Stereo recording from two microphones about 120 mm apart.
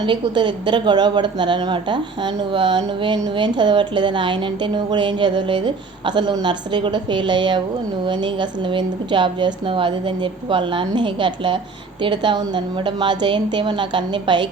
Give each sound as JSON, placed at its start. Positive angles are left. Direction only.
{"t": 0.0, "sound": "a woman's voice", "side_deg": -40}